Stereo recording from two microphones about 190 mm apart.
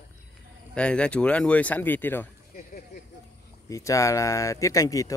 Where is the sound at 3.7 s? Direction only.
15° left (ahead or behind).